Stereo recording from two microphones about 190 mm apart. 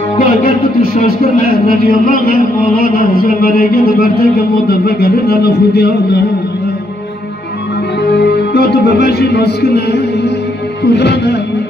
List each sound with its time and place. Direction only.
0.2 s speech: 50° left (ahead or behind)
1.5 s music: 50° left (ahead or behind)
8.0 s music: 60° left (ahead or behind)